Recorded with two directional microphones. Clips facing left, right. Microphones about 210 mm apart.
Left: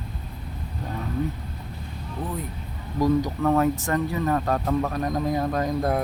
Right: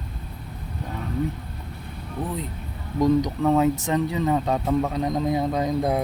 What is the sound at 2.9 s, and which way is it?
Speech, 20° right (ahead or behind).